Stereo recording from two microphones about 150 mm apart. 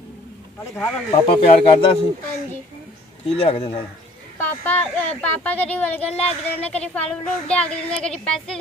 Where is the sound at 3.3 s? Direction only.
40° left (ahead or behind).